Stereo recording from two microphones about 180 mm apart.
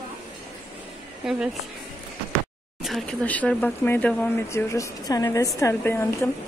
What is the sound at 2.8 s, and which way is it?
Speech, centre (ahead or behind).